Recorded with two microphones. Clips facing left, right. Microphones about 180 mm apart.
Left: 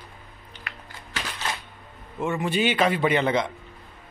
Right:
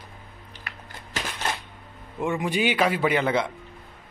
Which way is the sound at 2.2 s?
15° right (ahead or behind).